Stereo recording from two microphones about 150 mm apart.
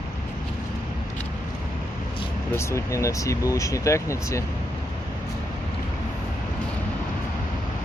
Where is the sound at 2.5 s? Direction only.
20° left (ahead or behind).